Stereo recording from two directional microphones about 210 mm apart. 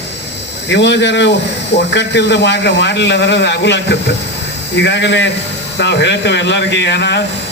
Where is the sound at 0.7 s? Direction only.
55° left (ahead or behind).